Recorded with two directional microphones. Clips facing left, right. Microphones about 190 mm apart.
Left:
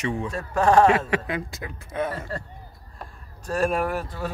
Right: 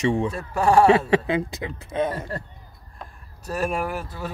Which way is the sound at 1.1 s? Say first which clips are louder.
Right 6 dB; 25° right (ahead or behind).